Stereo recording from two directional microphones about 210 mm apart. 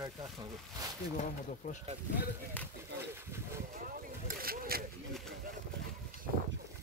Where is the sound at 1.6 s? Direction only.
40° left (ahead or behind).